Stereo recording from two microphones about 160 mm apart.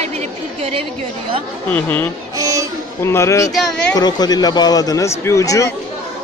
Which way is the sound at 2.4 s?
20° right (ahead or behind).